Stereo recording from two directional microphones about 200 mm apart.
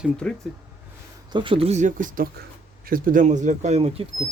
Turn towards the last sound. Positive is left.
turn(degrees=-30)  # may be behind; listen again after turning